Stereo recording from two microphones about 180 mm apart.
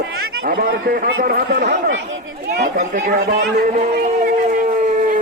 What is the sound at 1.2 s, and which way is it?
Speech, 55° right (ahead or behind).